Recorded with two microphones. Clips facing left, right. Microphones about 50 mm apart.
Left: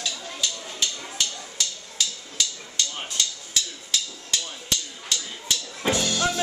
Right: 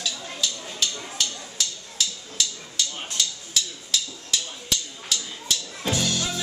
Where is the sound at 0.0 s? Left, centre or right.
Centre.